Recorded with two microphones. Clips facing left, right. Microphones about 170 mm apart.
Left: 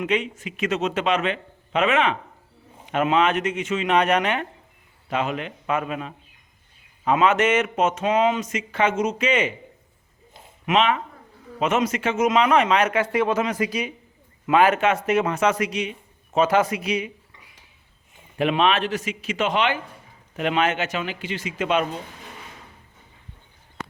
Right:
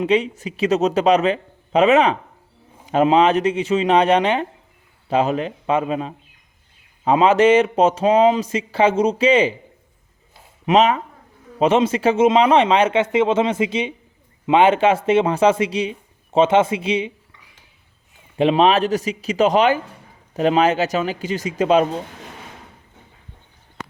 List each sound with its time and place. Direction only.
0.0 s speech: 35° right (ahead or behind)
10.7 s a man's voice: 35° right (ahead or behind)
18.3 s speech: 30° right (ahead or behind)